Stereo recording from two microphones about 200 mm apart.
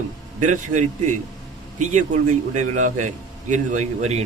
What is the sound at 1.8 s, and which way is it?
A man's voice, 35° right (ahead or behind).